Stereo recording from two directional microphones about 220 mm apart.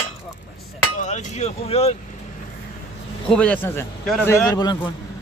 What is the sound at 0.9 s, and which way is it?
Speech, 35° left (ahead or behind).